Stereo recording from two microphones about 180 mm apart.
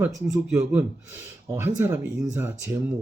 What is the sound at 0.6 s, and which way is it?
A man's voice, 10° right (ahead or behind).